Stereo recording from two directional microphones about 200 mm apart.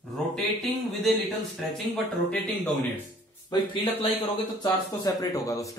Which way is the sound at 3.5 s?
25° left (ahead or behind).